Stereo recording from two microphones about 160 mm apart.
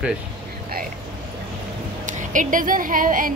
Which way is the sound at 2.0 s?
50° right (ahead or behind).